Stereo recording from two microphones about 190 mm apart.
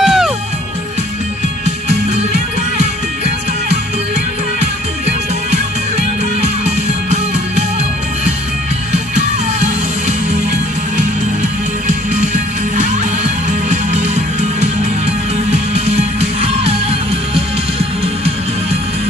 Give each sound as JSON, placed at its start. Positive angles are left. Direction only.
{"t": 0.0, "sound": "music", "side_deg": 0}
{"t": 1.9, "sound": "music", "side_deg": -35}
{"t": 5.5, "sound": "music", "side_deg": -35}
{"t": 12.7, "sound": "music", "side_deg": -40}